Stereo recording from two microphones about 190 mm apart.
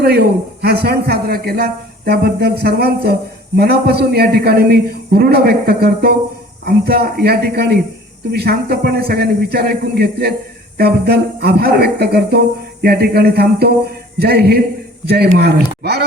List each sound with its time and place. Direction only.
0.0 s a man's voice: 60° right (ahead or behind)